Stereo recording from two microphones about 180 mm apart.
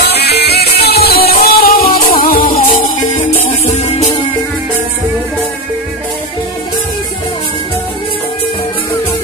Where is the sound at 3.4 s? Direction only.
40° left (ahead or behind).